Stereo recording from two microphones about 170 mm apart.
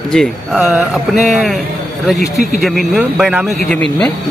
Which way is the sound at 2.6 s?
Centre (ahead or behind).